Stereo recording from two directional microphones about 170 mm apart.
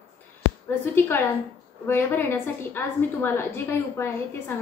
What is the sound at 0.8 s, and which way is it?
A woman's voice, 15° left (ahead or behind).